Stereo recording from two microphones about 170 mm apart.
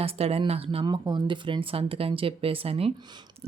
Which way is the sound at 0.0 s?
35° right (ahead or behind).